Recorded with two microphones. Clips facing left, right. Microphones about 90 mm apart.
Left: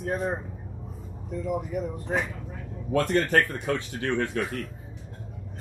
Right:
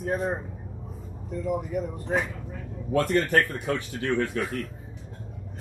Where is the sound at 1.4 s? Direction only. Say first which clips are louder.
Right 1 dB; centre (ahead or behind).